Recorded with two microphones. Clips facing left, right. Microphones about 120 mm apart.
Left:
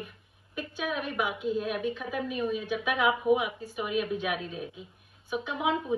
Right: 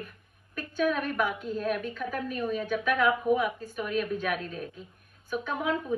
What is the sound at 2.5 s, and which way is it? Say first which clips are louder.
A woman's voice: right 2 dB; 50° right (ahead or behind).